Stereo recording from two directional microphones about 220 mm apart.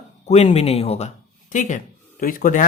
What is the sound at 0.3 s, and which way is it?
A man's voice, 30° left (ahead or behind).